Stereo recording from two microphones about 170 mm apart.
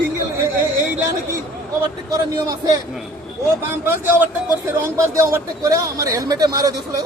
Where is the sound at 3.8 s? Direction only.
10° right (ahead or behind).